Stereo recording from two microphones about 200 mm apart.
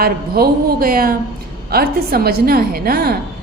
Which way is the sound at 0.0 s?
50° right (ahead or behind).